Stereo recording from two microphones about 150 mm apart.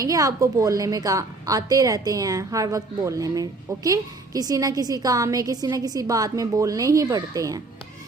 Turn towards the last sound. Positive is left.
turn(degrees=-25)  # may be behind; listen again after turning